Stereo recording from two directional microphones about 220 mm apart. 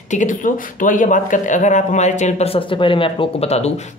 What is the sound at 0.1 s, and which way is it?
Speech, 35° left (ahead or behind).